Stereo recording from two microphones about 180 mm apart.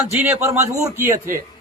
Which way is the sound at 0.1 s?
10° right (ahead or behind).